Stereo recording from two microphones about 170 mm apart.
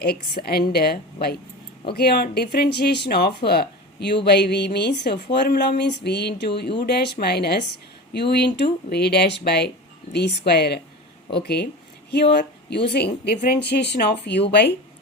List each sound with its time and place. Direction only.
0.0 s speech: 65° left (ahead or behind); by 14.7 s 80° left